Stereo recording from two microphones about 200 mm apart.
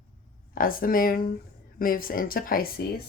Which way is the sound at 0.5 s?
45° left (ahead or behind).